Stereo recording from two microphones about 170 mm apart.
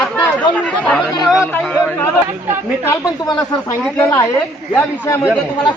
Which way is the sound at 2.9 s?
20° left (ahead or behind).